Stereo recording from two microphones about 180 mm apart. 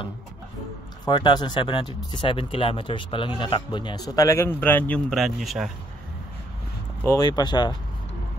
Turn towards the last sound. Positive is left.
turn(degrees=25)  # may be behind; listen again after turning